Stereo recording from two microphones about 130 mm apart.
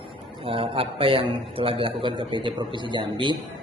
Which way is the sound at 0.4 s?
45° right (ahead or behind).